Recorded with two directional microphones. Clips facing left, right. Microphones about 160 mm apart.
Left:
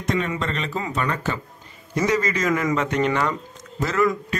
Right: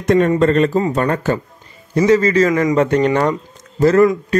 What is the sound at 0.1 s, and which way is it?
A man's voice, 45° right (ahead or behind).